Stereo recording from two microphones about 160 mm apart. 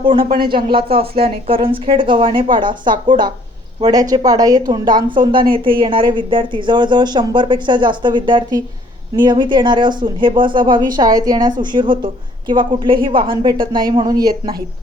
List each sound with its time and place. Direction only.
0.0 s speech: 30° right (ahead or behind)
0.3 s speech: 70° right (ahead or behind)
0.5 s speech: 35° right (ahead or behind)